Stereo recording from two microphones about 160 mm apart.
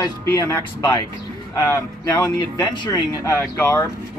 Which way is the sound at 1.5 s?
25° left (ahead or behind).